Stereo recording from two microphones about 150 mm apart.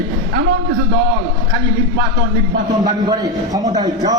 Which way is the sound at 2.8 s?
25° right (ahead or behind).